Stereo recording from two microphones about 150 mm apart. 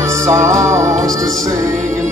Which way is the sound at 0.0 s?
20° right (ahead or behind).